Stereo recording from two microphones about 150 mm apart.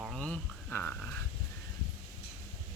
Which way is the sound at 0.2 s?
10° left (ahead or behind).